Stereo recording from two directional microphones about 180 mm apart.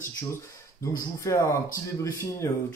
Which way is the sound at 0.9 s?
15° left (ahead or behind).